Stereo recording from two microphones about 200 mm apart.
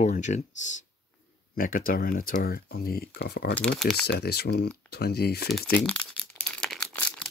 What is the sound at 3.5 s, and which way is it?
Speech, 5° left (ahead or behind).